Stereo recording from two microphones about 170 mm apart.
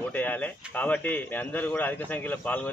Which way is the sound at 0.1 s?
10° left (ahead or behind).